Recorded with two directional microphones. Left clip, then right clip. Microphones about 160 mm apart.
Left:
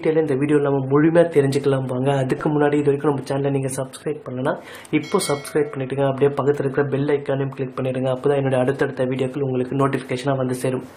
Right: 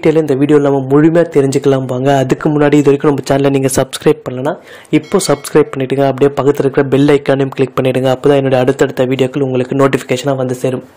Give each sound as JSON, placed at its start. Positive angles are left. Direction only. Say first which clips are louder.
{"t": 0.0, "sound": "speech", "louder": "right 8 dB", "side_deg": -45}